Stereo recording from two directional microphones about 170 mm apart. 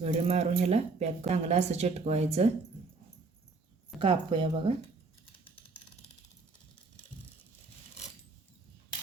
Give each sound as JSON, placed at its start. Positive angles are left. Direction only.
{"t": 0.0, "sound": "speech", "side_deg": -40}
{"t": 4.0, "sound": "a woman's voice", "side_deg": -30}